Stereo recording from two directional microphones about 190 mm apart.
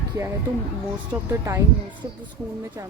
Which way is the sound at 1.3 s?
15° right (ahead or behind).